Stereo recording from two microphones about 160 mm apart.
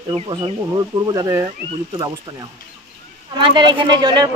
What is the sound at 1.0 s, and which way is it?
Speech, 20° right (ahead or behind).